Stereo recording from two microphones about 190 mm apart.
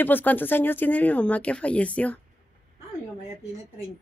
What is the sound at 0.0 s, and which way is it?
Speech, 10° left (ahead or behind).